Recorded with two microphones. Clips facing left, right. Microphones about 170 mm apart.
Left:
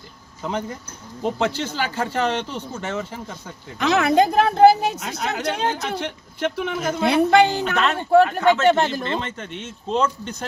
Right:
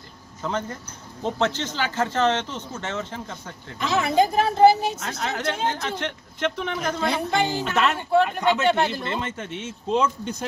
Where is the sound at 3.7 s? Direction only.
70° left (ahead or behind).